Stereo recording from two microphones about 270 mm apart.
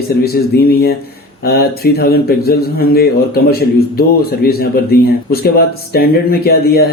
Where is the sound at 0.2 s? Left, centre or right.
Left.